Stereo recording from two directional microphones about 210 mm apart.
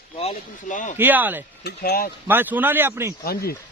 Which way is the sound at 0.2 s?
35° left (ahead or behind).